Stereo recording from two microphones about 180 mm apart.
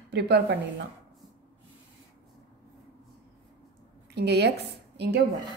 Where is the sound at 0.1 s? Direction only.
70° right (ahead or behind).